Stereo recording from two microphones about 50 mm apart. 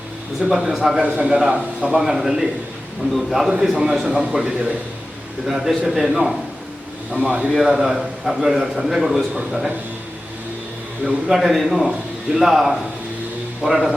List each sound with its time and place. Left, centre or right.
0.5 s a man's voice: centre
0.9 s a man's voice: right; by 3.5 s centre
3.8 s a man's voice: centre
7.1 s a man's voice: right
7.5 s a man's voice: centre
11.0 s a man's voice: centre